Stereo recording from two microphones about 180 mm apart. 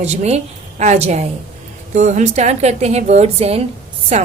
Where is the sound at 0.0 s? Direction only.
40° right (ahead or behind).